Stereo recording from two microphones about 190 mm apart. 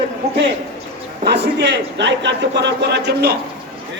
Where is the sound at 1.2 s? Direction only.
65° right (ahead or behind).